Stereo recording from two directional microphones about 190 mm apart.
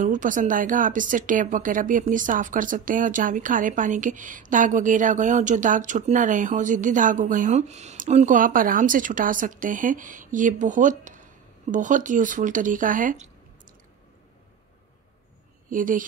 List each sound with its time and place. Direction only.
0.0 s a woman's voice: 45° right (ahead or behind)
15.7 s a woman's voice: 45° right (ahead or behind)